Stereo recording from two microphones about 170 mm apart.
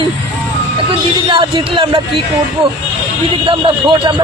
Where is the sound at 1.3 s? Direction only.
30° right (ahead or behind).